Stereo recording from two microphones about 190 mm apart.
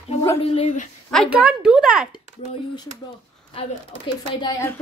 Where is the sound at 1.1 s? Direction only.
Centre (ahead or behind).